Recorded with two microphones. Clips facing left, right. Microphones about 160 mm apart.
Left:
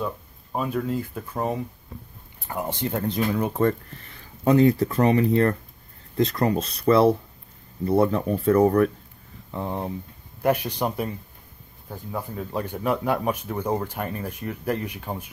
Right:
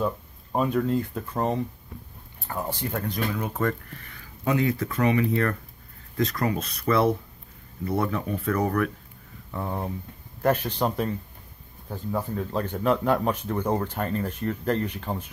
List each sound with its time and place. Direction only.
0.0 s speech: centre (ahead or behind)
2.4 s speech: 15° left (ahead or behind)
9.5 s speech: 20° left (ahead or behind)